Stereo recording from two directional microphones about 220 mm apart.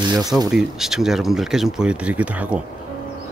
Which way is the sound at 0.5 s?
Centre (ahead or behind).